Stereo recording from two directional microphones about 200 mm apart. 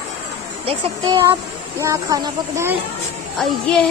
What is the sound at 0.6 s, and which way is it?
Speech, 30° right (ahead or behind).